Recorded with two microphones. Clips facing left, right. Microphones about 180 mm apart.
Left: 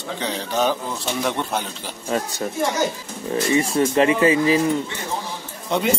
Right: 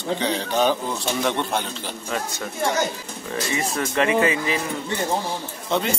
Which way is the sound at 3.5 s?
30° left (ahead or behind).